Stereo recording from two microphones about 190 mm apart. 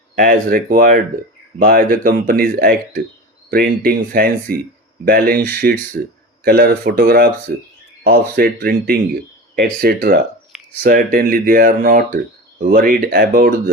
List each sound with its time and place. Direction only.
0.2 s speech: 50° right (ahead or behind)